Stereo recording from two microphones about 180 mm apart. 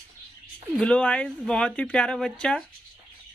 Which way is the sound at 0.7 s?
5° left (ahead or behind).